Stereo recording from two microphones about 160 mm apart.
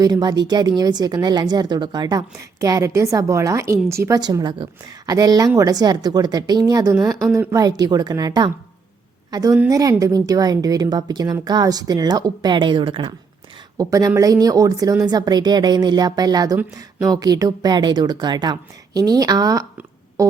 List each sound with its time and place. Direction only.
0.0 s a woman's voice: 25° right (ahead or behind)
13.7 s a woman's voice: 20° right (ahead or behind)